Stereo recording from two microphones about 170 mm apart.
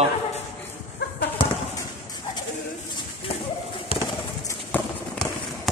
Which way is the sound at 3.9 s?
35° left (ahead or behind).